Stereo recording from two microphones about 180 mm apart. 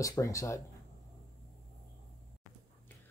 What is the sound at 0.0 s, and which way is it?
Speech, 15° left (ahead or behind).